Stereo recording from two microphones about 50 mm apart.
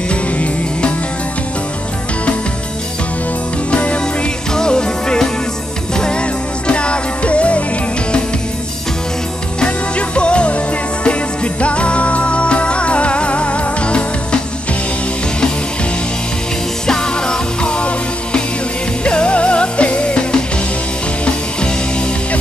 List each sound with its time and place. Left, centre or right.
0.1 s music: left
3.7 s music: left
9.6 s music: left
16.8 s music: centre